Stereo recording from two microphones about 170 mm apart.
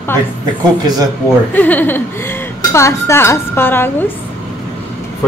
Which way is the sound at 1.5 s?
10° left (ahead or behind).